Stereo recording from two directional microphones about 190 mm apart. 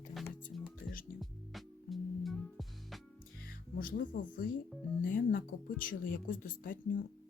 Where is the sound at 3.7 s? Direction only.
45° left (ahead or behind).